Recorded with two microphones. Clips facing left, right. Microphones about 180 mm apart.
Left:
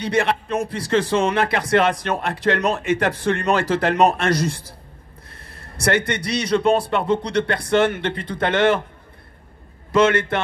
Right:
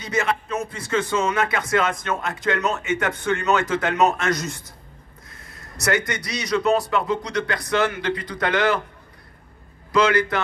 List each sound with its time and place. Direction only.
0.0 s a man's voice: 30° left (ahead or behind)
9.9 s speech: 25° left (ahead or behind)